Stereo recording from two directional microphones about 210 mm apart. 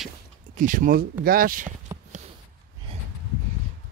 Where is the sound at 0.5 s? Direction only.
40° right (ahead or behind).